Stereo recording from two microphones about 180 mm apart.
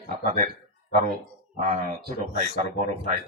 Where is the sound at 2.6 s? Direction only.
40° right (ahead or behind).